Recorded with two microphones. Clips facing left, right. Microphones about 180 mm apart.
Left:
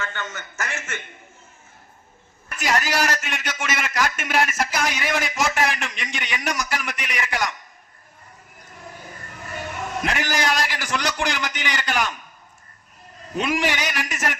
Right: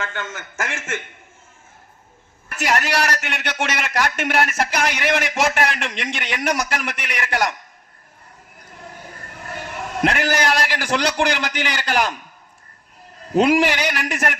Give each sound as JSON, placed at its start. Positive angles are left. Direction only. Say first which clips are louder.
{"t": 0.0, "sound": "a man's voice", "louder": "right 2 dB", "side_deg": -50}
{"t": 2.5, "sound": "a man's voice", "louder": "right 2 dB", "side_deg": -70}
{"t": 10.0, "sound": "a man's voice", "louder": "right 6 dB", "side_deg": -65}
{"t": 13.3, "sound": "a man's voice", "louder": "right 7 dB", "side_deg": -70}